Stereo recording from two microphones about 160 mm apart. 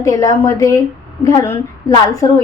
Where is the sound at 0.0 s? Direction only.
20° left (ahead or behind).